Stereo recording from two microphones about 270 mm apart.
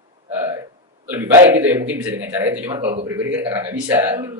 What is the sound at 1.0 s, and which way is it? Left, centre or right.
A woman's voice, centre.